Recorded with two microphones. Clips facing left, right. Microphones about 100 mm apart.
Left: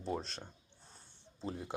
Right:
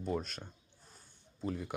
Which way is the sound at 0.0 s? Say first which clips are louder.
Right 2 dB; 30° left (ahead or behind).